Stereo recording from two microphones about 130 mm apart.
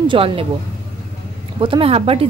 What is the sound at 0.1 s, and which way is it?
Speech, 45° right (ahead or behind).